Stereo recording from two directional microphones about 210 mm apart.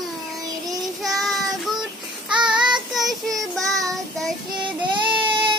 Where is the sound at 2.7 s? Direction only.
Centre (ahead or behind).